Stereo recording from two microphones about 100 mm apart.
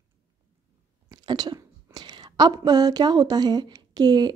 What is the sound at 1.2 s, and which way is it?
Speech, 45° right (ahead or behind).